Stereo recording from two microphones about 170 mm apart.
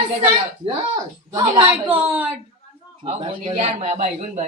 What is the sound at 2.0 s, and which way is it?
Speech, 10° right (ahead or behind).